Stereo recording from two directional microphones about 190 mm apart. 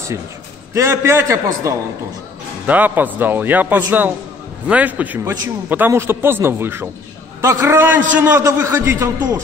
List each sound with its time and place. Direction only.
0.7 s a man's voice: 15° right (ahead or behind)